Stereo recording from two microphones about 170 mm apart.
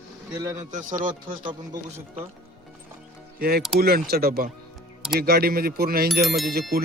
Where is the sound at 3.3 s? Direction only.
60° right (ahead or behind).